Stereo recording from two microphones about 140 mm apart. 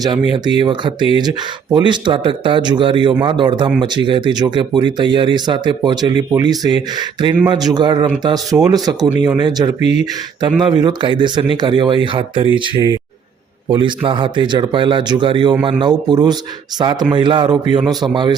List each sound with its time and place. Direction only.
0.6 s speech: 35° right (ahead or behind)